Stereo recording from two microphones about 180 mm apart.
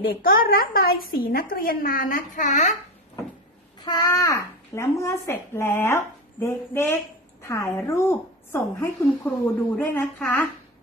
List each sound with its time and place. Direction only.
0.0 s a woman's voice: 55° left (ahead or behind)
3.8 s a child's voice: 25° left (ahead or behind)